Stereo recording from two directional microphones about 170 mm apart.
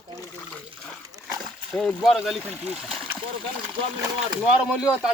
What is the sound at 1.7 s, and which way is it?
Speech, 5° left (ahead or behind).